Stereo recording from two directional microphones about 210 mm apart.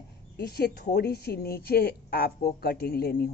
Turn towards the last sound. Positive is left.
turn(degrees=45)  # may be behind; listen again after turning